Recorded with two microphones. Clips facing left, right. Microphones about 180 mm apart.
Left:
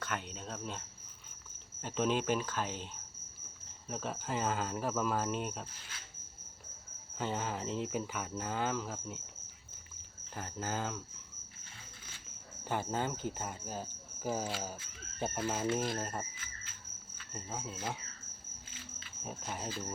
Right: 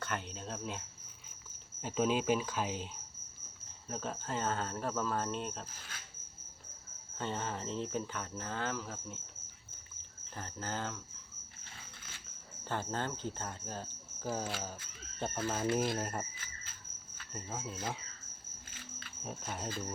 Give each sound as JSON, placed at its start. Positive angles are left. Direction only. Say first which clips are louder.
{"t": 0.0, "sound": "cricket", "louder": "even", "side_deg": 0}
{"t": 1.8, "sound": "cricket", "louder": "right 1 dB", "side_deg": -10}
{"t": 3.8, "sound": "cricket", "louder": "left 1 dB", "side_deg": 5}
{"t": 7.2, "sound": "cricket", "louder": "left 2 dB", "side_deg": 5}
{"t": 10.3, "sound": "cricket", "louder": "left 2 dB", "side_deg": 10}
{"t": 12.6, "sound": "cricket", "louder": "left 2 dB", "side_deg": 10}
{"t": 15.8, "sound": "speech", "louder": "right 2 dB", "side_deg": -5}
{"t": 17.3, "sound": "speech", "louder": "even", "side_deg": 0}
{"t": 18.7, "sound": "cricket", "louder": "right 1 dB", "side_deg": -50}
{"t": 19.2, "sound": "speech", "louder": "even", "side_deg": 0}